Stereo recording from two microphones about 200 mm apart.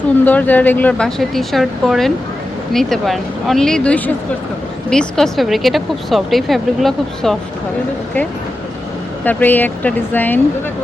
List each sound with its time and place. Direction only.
0.3 s a woman's voice: 10° left (ahead or behind)
9.2 s speech: 10° left (ahead or behind)